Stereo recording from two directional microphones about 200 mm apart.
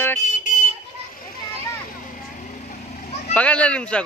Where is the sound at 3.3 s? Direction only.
5° left (ahead or behind).